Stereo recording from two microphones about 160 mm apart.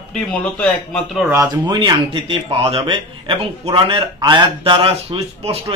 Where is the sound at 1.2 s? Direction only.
20° right (ahead or behind).